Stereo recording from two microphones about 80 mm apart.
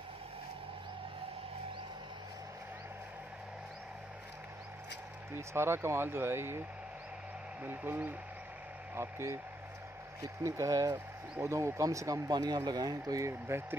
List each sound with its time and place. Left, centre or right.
5.3 s speech: right
7.6 s speech: right
10.2 s speech: right
11.3 s speech: right
12.3 s speech: right
13.5 s speech: right